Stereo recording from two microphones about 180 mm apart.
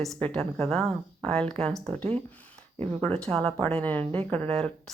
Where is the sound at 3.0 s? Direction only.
5° left (ahead or behind).